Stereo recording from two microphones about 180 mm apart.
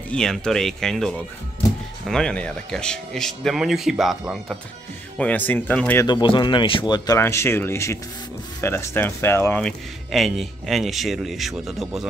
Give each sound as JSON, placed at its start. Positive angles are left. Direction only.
{"t": 0.1, "sound": "speech", "side_deg": 5}
{"t": 6.0, "sound": "speech", "side_deg": 25}
{"t": 6.9, "sound": "speech", "side_deg": 15}